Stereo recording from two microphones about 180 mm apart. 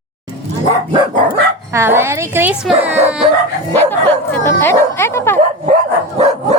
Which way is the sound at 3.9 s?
10° left (ahead or behind).